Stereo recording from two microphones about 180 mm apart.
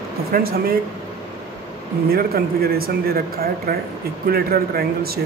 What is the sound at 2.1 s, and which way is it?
Speech, 60° right (ahead or behind).